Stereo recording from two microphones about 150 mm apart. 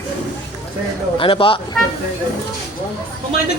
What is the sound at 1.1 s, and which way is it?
Speech, 35° left (ahead or behind).